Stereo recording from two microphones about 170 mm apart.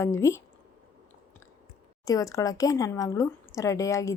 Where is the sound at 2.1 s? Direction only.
20° left (ahead or behind).